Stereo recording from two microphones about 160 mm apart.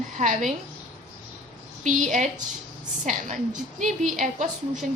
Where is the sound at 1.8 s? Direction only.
50° right (ahead or behind).